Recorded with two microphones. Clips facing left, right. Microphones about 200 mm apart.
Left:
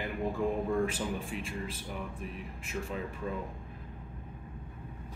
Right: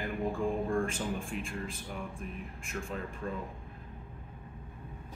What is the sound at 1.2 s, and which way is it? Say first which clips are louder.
Speech: even; centre (ahead or behind).